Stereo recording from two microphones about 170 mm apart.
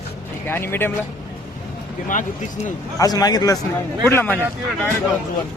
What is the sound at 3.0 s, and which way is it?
A man's voice, 20° left (ahead or behind).